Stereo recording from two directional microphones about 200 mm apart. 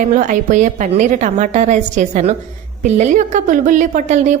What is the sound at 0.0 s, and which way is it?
A woman's voice, 40° right (ahead or behind).